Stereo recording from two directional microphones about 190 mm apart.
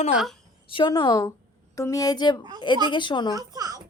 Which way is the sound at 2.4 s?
25° right (ahead or behind).